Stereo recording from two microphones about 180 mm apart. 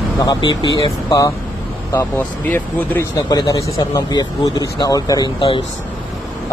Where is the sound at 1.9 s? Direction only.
10° left (ahead or behind).